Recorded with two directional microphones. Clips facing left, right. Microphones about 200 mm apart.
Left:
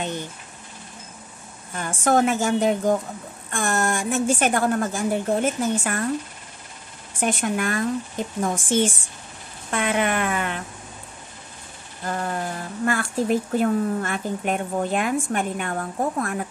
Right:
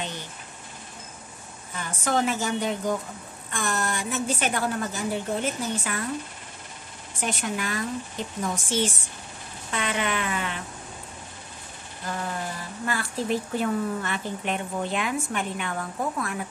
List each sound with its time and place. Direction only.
1.8 s speech: 50° left (ahead or behind)
7.2 s speech: 50° left (ahead or behind)
12.1 s speech: 50° left (ahead or behind)